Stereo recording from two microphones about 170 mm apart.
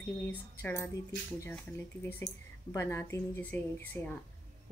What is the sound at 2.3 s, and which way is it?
Speech, 90° left.